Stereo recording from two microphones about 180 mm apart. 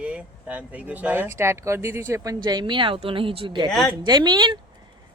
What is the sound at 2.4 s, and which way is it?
A woman's voice, 25° right (ahead or behind).